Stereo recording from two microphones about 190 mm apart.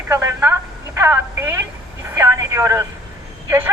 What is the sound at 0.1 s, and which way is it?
A woman's voice, 15° right (ahead or behind).